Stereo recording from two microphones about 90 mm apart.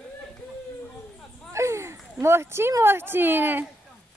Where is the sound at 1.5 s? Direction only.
30° right (ahead or behind).